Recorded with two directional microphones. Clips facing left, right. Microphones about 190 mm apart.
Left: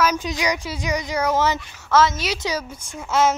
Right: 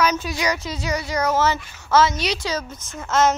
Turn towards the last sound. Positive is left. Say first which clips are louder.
# even
turn(degrees=10)  # may be behind; listen again after turning